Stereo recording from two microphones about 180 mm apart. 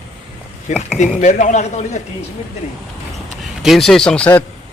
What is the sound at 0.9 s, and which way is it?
A man's voice, 45° left (ahead or behind).